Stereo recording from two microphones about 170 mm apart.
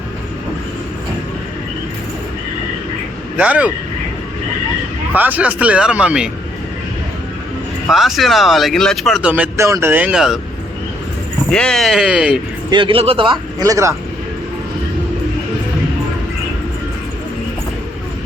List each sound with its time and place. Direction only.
3.3 s speech: 10° right (ahead or behind)
5.1 s speech: 10° right (ahead or behind)
7.9 s speech: centre (ahead or behind)
11.5 s speech: 5° left (ahead or behind)
12.7 s a man's voice: 30° right (ahead or behind)